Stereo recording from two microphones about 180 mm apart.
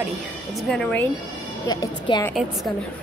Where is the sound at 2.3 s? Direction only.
Centre (ahead or behind).